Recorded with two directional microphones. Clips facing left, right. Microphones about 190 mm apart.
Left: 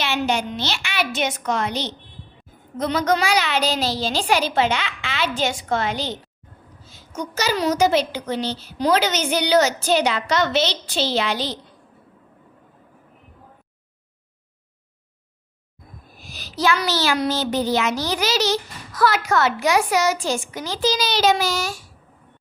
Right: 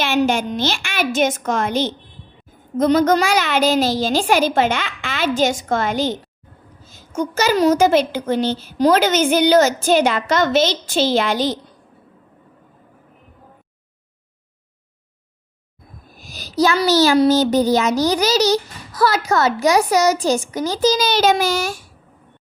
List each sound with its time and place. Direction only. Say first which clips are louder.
0.0 s a woman's voice: right 5 dB; 50° right (ahead or behind)
16.1 s speech: right 10 dB; 40° right (ahead or behind)